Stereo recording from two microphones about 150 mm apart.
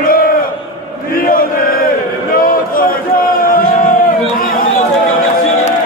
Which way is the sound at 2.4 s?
70° left (ahead or behind).